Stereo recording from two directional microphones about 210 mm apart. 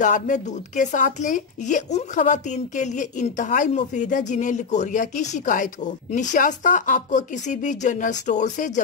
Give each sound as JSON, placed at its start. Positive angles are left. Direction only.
{"t": 0.0, "sound": "speech", "side_deg": 35}